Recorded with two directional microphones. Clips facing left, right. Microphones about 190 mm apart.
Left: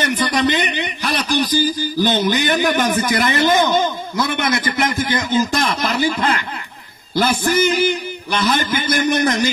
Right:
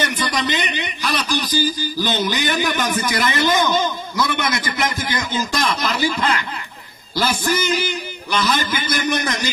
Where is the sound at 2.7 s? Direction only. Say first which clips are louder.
Left 4 dB; 35° left (ahead or behind).